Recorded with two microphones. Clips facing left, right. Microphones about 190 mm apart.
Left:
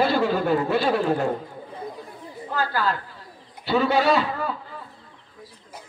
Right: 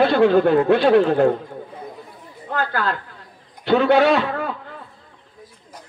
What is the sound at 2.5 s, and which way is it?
Speech, 60° right (ahead or behind).